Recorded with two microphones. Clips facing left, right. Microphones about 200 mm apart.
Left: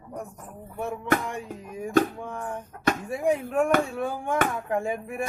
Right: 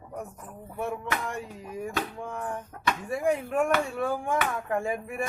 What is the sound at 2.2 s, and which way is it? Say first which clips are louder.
Music: even; centre (ahead or behind).